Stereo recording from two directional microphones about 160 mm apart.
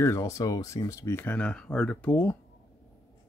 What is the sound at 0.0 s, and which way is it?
Speech, 20° left (ahead or behind).